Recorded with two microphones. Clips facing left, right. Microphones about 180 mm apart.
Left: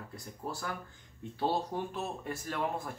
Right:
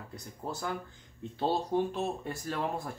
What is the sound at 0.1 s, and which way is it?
Speech, 20° right (ahead or behind).